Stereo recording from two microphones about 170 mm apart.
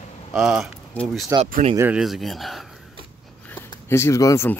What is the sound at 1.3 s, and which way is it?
Speech, 20° right (ahead or behind).